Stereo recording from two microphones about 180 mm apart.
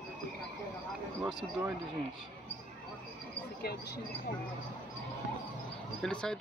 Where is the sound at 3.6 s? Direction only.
60° left (ahead or behind).